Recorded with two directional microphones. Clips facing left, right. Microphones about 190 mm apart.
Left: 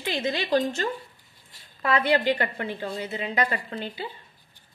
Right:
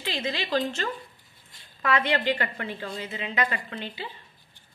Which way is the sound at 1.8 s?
35° left (ahead or behind).